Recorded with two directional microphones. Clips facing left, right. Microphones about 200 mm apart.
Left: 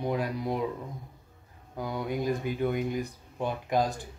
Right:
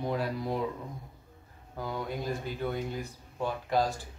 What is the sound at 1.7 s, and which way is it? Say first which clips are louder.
Speech: left 3 dB; 15° left (ahead or behind).